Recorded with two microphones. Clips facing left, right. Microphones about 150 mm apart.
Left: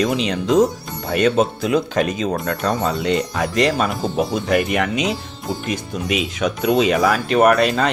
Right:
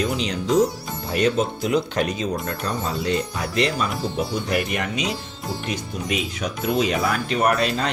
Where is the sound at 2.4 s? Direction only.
70° left (ahead or behind).